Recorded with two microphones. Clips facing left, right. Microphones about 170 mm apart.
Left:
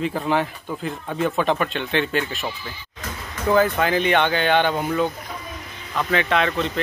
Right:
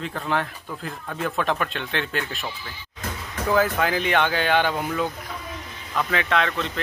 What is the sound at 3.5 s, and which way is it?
A man's voice, 5° right (ahead or behind).